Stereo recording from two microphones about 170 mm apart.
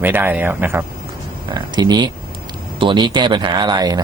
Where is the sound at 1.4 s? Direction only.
25° right (ahead or behind).